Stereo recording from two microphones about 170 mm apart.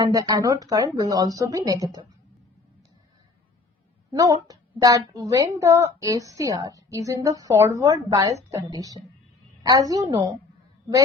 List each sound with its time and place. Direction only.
0.0 s speech: 20° right (ahead or behind)
4.1 s speech: 20° right (ahead or behind)